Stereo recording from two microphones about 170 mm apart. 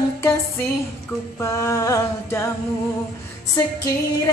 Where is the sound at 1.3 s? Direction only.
15° left (ahead or behind).